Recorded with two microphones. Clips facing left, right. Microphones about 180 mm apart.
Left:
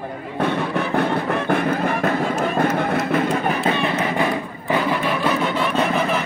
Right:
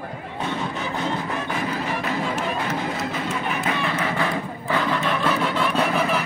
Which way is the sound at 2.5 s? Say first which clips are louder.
Left 7 dB; 55° left (ahead or behind).